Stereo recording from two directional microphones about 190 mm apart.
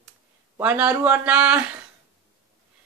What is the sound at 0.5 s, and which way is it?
Speech, 5° right (ahead or behind).